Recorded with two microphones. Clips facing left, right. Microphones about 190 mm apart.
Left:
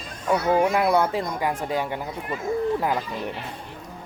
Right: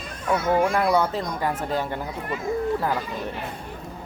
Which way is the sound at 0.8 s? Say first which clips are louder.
Left 1 dB; 5° left (ahead or behind).